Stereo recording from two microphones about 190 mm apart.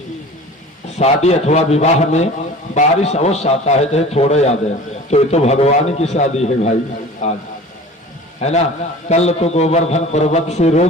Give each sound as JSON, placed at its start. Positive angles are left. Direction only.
{"t": 0.9, "sound": "a man's voice", "side_deg": 35}
{"t": 8.4, "sound": "a man's voice", "side_deg": 35}